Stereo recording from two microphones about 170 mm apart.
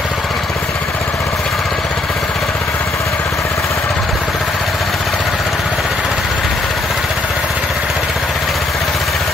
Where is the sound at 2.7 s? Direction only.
15° left (ahead or behind).